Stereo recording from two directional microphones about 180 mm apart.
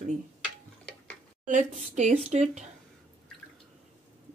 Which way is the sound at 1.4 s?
40° right (ahead or behind).